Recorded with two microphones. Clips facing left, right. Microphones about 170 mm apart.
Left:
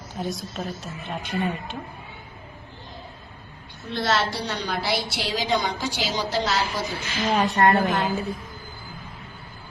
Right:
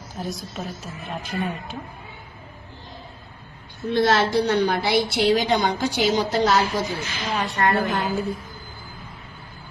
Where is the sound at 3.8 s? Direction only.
50° right (ahead or behind).